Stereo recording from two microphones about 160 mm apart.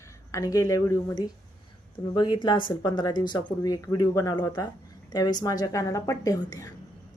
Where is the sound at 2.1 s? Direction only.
30° left (ahead or behind).